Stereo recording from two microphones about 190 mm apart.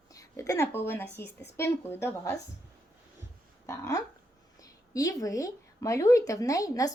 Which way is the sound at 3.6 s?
15° left (ahead or behind).